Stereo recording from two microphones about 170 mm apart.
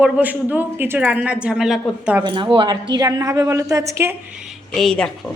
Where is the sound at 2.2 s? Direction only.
30° right (ahead or behind).